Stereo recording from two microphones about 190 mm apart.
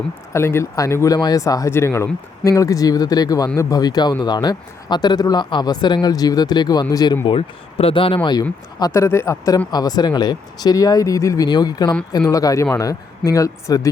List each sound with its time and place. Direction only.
0.3 s speech: 15° left (ahead or behind)